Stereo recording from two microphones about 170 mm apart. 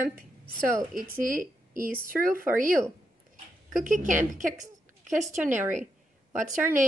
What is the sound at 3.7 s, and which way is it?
Speech, 50° right (ahead or behind).